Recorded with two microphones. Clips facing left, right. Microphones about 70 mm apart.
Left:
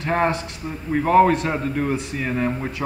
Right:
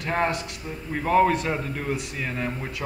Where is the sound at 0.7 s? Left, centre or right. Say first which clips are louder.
Left 5 dB; centre.